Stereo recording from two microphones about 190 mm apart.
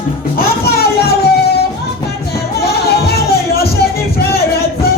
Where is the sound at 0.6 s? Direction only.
55° left (ahead or behind).